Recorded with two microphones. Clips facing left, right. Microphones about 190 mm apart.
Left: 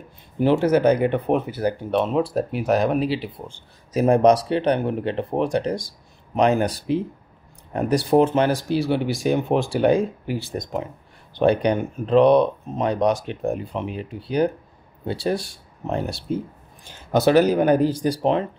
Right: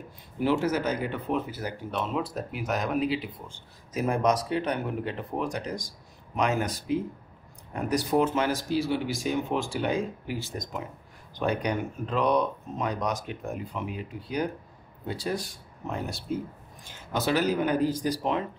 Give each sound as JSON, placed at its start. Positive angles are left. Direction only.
{"t": 0.4, "sound": "speech", "side_deg": 30}
{"t": 0.7, "sound": "speech", "side_deg": 65}
{"t": 2.2, "sound": "speech", "side_deg": 30}
{"t": 8.6, "sound": "speech", "side_deg": 65}
{"t": 11.4, "sound": "speech", "side_deg": 30}
{"t": 15.3, "sound": "speech", "side_deg": 30}
{"t": 17.1, "sound": "speech", "side_deg": 75}
{"t": 17.8, "sound": "speech", "side_deg": 30}